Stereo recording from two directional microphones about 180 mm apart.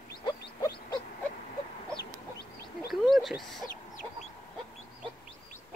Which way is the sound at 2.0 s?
65° left (ahead or behind).